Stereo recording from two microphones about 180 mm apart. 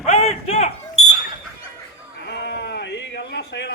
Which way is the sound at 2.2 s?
70° left (ahead or behind).